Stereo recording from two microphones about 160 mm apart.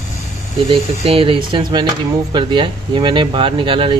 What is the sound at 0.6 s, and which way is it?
Speech, 35° right (ahead or behind).